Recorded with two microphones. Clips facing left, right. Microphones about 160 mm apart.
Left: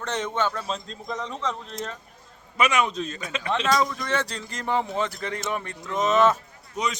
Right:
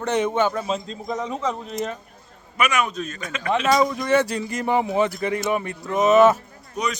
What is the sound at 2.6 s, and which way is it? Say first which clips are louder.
Speech: even; 25° left (ahead or behind).